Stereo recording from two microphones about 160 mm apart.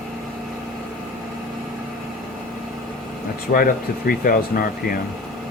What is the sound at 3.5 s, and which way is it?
Speech, 65° left (ahead or behind).